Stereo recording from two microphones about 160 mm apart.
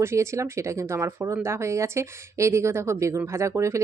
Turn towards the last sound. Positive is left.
turn(degrees=-20)  # may be behind; listen again after turning